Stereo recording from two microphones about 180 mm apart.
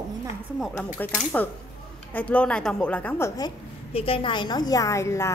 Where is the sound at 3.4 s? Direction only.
30° left (ahead or behind).